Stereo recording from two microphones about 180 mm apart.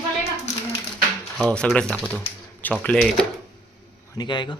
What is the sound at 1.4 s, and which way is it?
Speech, 5° left (ahead or behind).